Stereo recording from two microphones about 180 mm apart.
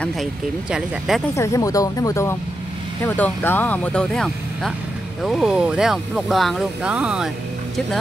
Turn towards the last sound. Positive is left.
turn(degrees=5)  # may be behind; listen again after turning